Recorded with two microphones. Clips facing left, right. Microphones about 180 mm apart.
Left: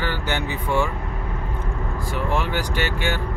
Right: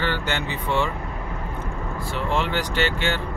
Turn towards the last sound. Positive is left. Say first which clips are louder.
# right 1 dB
turn(degrees=10)  # may be behind; listen again after turning